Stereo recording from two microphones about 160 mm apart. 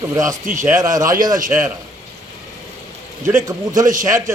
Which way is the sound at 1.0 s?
60° right (ahead or behind).